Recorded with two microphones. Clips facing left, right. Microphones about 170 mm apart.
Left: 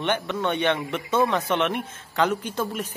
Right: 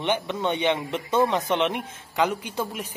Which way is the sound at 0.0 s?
15° right (ahead or behind).